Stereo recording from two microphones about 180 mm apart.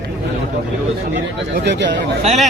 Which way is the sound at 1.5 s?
70° right (ahead or behind).